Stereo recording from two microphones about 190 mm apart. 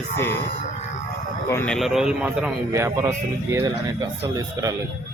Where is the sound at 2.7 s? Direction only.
15° right (ahead or behind).